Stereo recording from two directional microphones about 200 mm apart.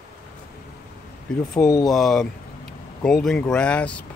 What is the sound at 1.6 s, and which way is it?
Speech, 15° left (ahead or behind).